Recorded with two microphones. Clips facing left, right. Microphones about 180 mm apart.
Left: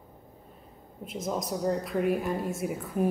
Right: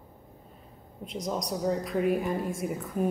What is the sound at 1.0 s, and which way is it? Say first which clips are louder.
A woman's voice: even; 5° left (ahead or behind).